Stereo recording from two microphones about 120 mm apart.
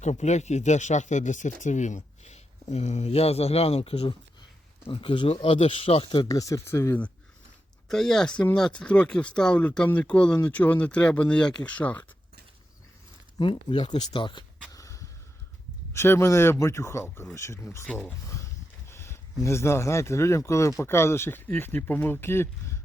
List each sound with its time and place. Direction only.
0.0 s speech: 70° left (ahead or behind); by 6.2 s 45° left (ahead or behind)
6.2 s a man's voice: 30° left (ahead or behind)
7.9 s speech: 5° left (ahead or behind)
13.4 s speech: 45° left (ahead or behind)
14.7 s a sound: 25° left (ahead or behind)
15.9 s a man's voice: 20° left (ahead or behind)